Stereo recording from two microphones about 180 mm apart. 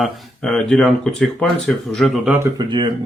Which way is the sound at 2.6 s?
25° right (ahead or behind).